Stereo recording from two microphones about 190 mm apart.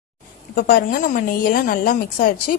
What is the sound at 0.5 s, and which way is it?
A woman's voice, 50° left (ahead or behind).